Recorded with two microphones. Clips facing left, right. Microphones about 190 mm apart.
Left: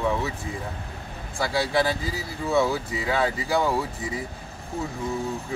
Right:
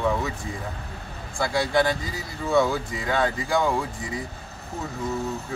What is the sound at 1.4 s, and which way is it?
Speech, centre (ahead or behind).